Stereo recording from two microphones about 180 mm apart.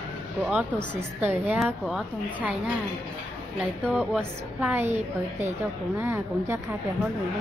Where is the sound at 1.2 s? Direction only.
10° right (ahead or behind).